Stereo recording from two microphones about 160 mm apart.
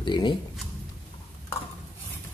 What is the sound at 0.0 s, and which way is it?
Speech, 30° left (ahead or behind).